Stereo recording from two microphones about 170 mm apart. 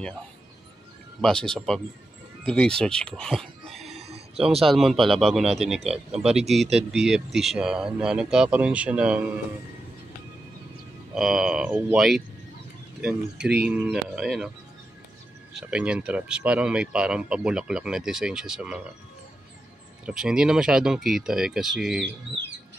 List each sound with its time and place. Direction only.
1.2 s speech: 5° left (ahead or behind)
4.0 s a sound: 35° right (ahead or behind)
4.6 s speech: centre (ahead or behind)
11.1 s speech: centre (ahead or behind)
13.6 s speech: 5° right (ahead or behind)
15.5 s speech: 5° right (ahead or behind)
20.1 s speech: 5° right (ahead or behind)